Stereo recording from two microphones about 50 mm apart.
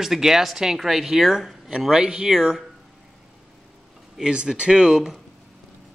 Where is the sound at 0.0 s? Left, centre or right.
Centre.